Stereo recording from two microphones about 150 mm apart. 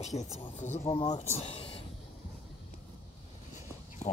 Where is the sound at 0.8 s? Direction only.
35° left (ahead or behind).